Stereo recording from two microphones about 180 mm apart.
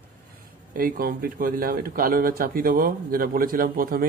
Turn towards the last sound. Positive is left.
turn(degrees=-55)  # may be behind; listen again after turning